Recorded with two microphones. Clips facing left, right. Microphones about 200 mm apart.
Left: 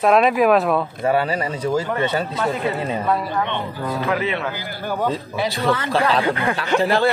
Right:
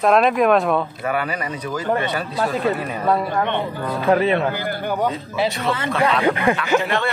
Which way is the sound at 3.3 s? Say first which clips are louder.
Right 2 dB; 50° right (ahead or behind).